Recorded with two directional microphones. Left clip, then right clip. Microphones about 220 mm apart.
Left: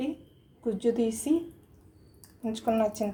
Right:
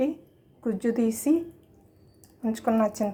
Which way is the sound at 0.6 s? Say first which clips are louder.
Even; 15° right (ahead or behind).